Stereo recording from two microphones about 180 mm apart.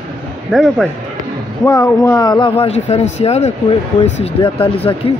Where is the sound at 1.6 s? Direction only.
15° left (ahead or behind).